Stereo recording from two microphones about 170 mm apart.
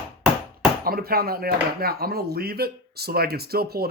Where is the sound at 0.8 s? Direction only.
60° right (ahead or behind).